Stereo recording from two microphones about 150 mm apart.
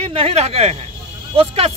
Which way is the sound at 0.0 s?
40° right (ahead or behind).